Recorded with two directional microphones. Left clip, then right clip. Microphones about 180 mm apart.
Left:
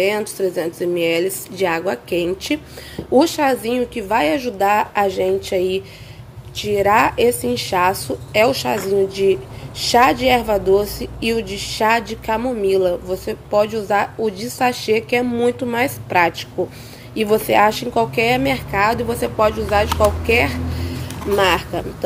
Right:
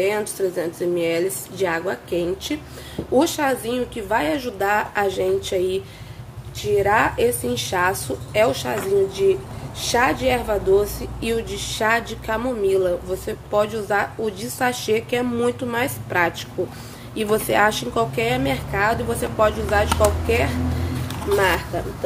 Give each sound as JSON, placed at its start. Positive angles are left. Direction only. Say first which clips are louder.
{"t": 0.0, "sound": "speech", "louder": "left 3 dB", "side_deg": 35}
{"t": 6.5, "sound": "a woman's voice", "louder": "left 3 dB", "side_deg": 40}